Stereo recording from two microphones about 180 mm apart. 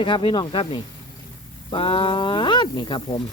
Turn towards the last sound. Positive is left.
turn(degrees=25)  # may be behind; listen again after turning